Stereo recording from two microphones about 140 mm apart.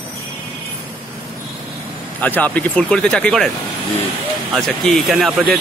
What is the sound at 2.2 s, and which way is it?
Speech, 10° left (ahead or behind).